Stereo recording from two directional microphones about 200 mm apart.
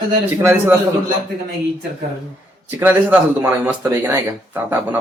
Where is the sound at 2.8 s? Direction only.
10° right (ahead or behind).